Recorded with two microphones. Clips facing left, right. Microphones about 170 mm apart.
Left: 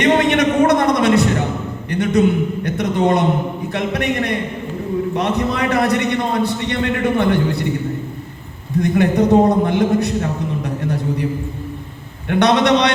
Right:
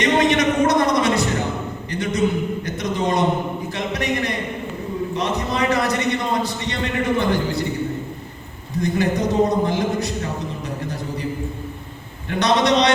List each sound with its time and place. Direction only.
0.0 s a sound: 60° left (ahead or behind)
8.8 s a man's voice: 60° left (ahead or behind)
12.3 s a man's voice: 60° left (ahead or behind)